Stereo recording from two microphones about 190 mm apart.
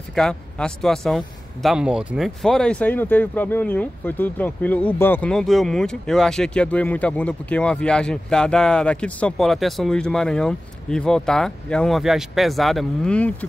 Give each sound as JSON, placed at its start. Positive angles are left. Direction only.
{"t": 0.1, "sound": "speech", "side_deg": 5}